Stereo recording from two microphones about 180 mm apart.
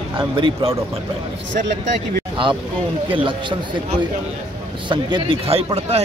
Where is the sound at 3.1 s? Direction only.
30° right (ahead or behind).